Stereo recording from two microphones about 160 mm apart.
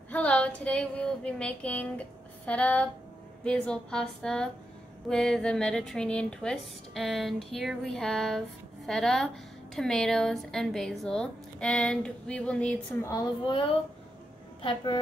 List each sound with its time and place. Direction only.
0.1 s female singing: 10° left (ahead or behind)
3.4 s speech: 5° left (ahead or behind)
13.1 s a woman's voice: 25° left (ahead or behind)